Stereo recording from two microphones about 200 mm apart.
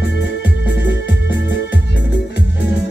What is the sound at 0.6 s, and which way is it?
Music, 60° left (ahead or behind).